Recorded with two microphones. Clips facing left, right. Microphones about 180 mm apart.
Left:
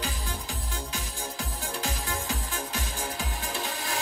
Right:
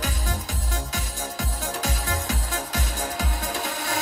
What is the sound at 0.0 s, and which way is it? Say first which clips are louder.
Music: right 4 dB; 40° right (ahead or behind).